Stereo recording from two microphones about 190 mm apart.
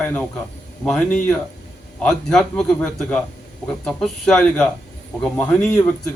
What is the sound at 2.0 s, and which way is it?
A man's voice, 5° left (ahead or behind).